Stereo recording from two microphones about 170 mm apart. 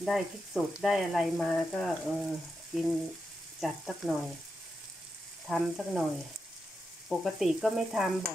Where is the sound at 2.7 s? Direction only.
Centre (ahead or behind).